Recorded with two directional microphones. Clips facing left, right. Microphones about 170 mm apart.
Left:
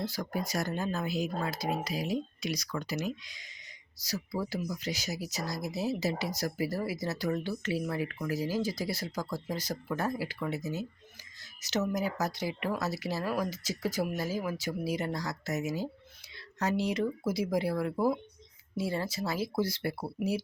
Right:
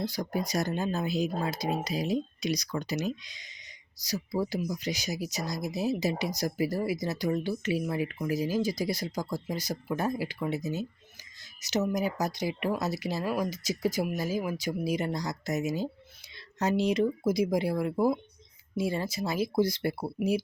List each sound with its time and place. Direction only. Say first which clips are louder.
0.0 s speech: right 3 dB; 15° right (ahead or behind)